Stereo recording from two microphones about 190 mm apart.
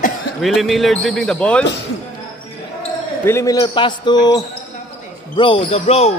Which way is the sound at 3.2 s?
15° left (ahead or behind).